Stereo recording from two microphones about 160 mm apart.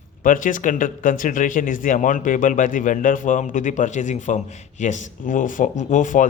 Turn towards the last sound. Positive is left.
turn(degrees=55)  # may be behind; listen again after turning